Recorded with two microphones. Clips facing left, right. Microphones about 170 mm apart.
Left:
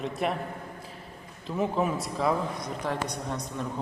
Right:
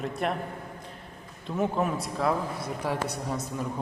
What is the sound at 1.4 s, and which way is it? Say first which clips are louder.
A man's voice: even; centre (ahead or behind).